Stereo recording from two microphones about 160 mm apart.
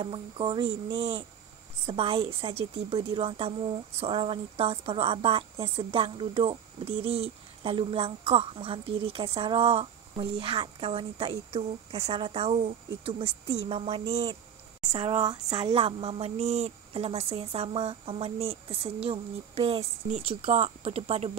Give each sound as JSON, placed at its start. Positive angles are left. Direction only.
{"t": 0.0, "sound": "a woman's voice", "side_deg": -30}